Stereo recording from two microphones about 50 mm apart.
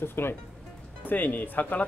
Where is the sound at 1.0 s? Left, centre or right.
Left.